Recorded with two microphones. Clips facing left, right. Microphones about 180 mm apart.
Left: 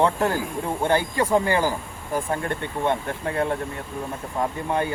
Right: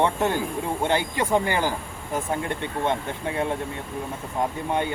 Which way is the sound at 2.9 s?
15° right (ahead or behind).